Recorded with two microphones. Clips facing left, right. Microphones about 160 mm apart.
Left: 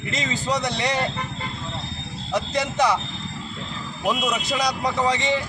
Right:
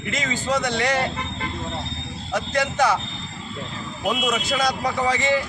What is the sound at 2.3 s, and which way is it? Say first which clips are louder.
Speech: right 1 dB; centre (ahead or behind).